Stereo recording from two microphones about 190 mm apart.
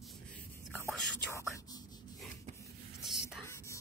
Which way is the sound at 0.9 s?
10° left (ahead or behind).